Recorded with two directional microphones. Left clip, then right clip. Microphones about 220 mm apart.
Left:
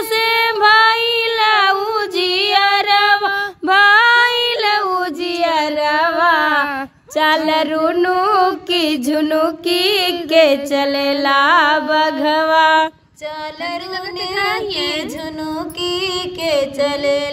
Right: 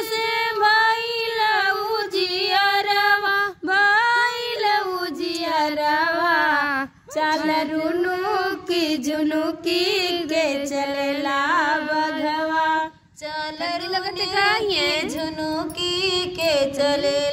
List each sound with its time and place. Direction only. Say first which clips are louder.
0.1 s female singing: left 9 dB; 40° left (ahead or behind)
5.5 s a sound: left 2 dB; 45° left (ahead or behind)
8.7 s music: left 6 dB; 40° left (ahead or behind)
9.8 s a sound: left 6 dB; 40° left (ahead or behind)
11.2 s music: left 9 dB; 40° left (ahead or behind)
15.8 s music: left 3 dB; 15° left (ahead or behind)